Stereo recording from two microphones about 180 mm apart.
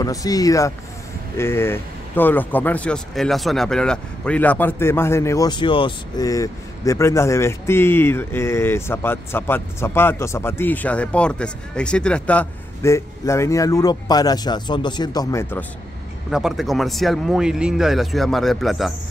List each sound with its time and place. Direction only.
0.0 s speech: 20° left (ahead or behind)
16.3 s speech: 5° right (ahead or behind)